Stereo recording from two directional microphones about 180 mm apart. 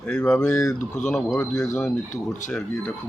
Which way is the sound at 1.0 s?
Centre (ahead or behind).